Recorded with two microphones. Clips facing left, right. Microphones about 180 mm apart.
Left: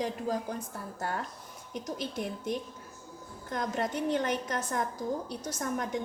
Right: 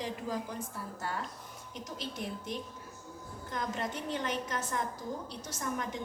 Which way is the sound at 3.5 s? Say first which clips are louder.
Left 4 dB; 45° left (ahead or behind).